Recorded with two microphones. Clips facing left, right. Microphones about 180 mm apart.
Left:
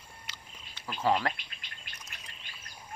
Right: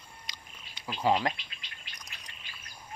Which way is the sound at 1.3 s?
50° left (ahead or behind).